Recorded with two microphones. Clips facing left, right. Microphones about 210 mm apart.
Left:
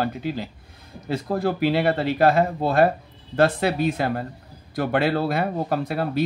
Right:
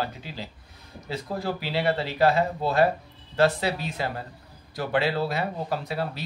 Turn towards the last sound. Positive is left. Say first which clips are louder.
# left 7 dB
turn(degrees=55)  # may be behind; listen again after turning